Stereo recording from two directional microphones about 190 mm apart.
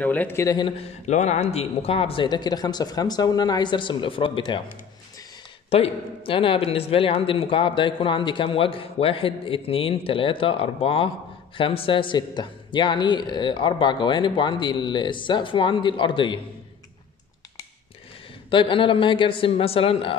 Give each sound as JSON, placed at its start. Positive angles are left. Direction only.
{"t": 0.0, "sound": "speech", "side_deg": 10}
{"t": 5.7, "sound": "speech", "side_deg": 30}
{"t": 18.5, "sound": "speech", "side_deg": 25}